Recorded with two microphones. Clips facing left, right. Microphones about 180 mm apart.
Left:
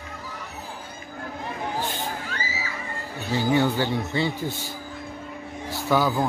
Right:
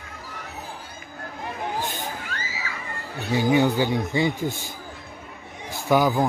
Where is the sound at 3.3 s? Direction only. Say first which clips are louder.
Right 2 dB; 15° right (ahead or behind).